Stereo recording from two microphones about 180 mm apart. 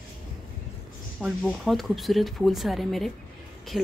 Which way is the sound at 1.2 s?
Centre (ahead or behind).